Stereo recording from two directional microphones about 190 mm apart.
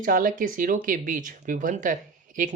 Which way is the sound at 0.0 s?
45° right (ahead or behind).